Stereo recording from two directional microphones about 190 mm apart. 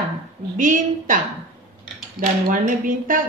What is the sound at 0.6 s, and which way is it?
Speech, 45° right (ahead or behind).